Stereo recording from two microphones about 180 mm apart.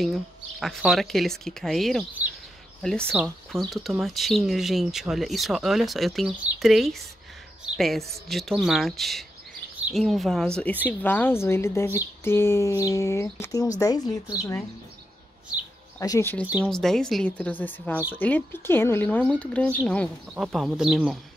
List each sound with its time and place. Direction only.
0.0 s speech: centre (ahead or behind); by 14.6 s 20° left (ahead or behind)
16.0 s speech: 15° left (ahead or behind)
16.6 s speech: centre (ahead or behind)